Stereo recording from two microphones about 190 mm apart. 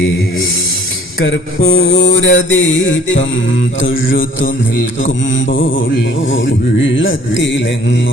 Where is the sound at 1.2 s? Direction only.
90° left.